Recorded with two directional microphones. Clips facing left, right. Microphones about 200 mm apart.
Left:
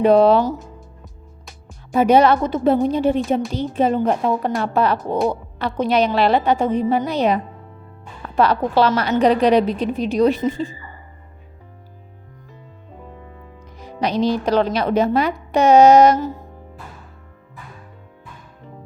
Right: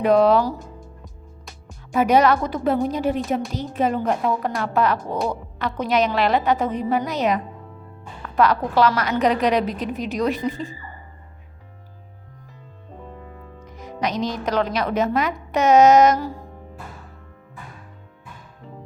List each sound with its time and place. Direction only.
0.0 s a woman's voice: 30° left (ahead or behind)
1.9 s a woman's voice: 30° left (ahead or behind)
13.7 s music: 30° left (ahead or behind)
14.0 s a woman's voice: 30° left (ahead or behind)